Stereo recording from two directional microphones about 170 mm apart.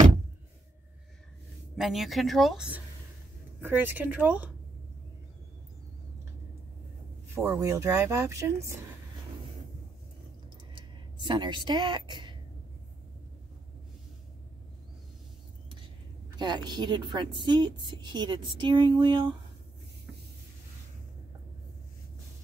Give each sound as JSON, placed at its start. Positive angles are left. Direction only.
{"t": 1.8, "sound": "speech", "side_deg": 0}
{"t": 7.3, "sound": "speech", "side_deg": -15}
{"t": 10.7, "sound": "a sound", "side_deg": -25}
{"t": 16.3, "sound": "a woman's voice", "side_deg": -25}